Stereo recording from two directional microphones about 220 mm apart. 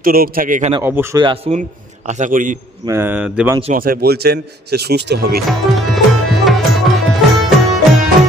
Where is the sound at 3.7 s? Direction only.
40° right (ahead or behind).